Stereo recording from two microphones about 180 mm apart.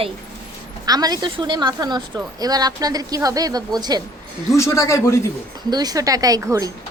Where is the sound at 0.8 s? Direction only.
20° right (ahead or behind).